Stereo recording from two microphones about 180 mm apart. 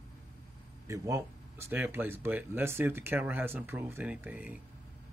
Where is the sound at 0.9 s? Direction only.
15° right (ahead or behind).